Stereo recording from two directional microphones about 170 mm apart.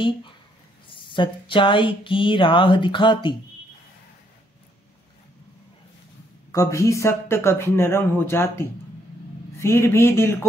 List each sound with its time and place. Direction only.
0.9 s speech: 30° left (ahead or behind)
6.5 s speech: 20° left (ahead or behind)